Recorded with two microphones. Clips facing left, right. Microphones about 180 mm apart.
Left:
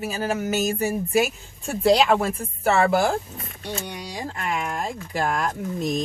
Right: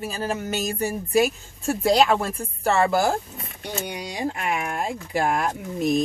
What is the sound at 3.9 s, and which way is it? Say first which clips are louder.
Speech: right 4 dB; 15° right (ahead or behind).